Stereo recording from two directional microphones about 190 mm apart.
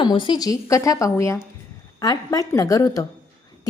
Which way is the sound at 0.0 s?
25° left (ahead or behind).